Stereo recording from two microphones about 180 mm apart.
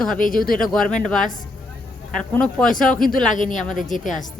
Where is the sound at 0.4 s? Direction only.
50° left (ahead or behind).